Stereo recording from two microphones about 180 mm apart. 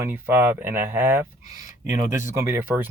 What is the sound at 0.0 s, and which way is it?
Speech, 10° right (ahead or behind).